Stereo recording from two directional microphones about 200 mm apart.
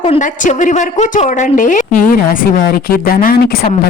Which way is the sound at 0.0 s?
35° left (ahead or behind).